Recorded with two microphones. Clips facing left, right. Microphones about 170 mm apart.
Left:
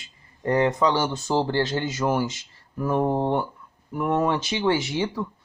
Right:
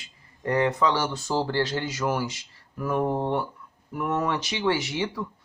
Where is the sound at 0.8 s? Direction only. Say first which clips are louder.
Left 2 dB; 20° left (ahead or behind).